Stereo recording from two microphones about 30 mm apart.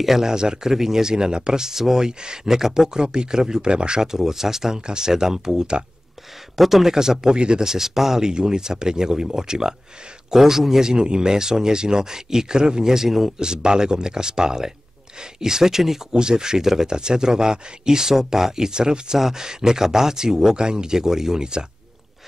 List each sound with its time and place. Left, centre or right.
0.2 s speech: right
4.0 s speech: centre
6.5 s speech: centre; by 7.6 s right
7.6 s speech: centre
8.3 s speech: right; by 10.8 s centre
10.8 s speech: right
12.9 s speech: centre
13.4 s speech: right
16.1 s speech: right
18.7 s speech: right
19.1 s speech: centre